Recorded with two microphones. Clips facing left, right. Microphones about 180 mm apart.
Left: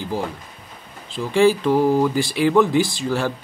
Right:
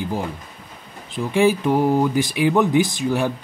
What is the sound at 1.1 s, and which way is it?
Speech, 15° right (ahead or behind).